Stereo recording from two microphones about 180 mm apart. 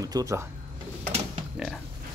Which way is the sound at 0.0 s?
20° right (ahead or behind).